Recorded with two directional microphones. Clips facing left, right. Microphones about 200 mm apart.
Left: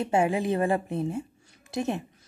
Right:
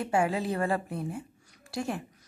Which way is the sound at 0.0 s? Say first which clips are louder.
Left 3 dB; 20° left (ahead or behind).